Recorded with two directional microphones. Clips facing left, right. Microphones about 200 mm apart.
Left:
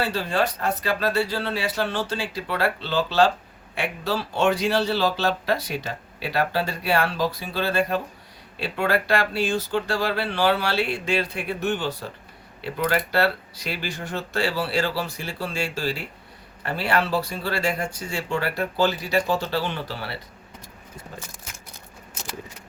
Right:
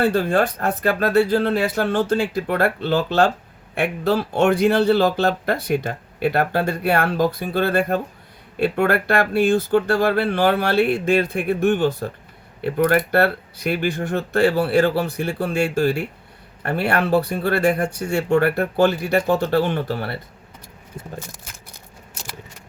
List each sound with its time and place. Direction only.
0.0 s speech: 50° right (ahead or behind)